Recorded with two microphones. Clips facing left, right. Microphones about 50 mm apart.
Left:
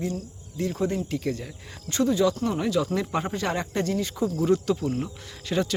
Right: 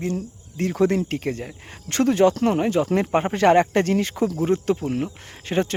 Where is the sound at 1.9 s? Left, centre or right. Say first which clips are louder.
Right 4 dB; right.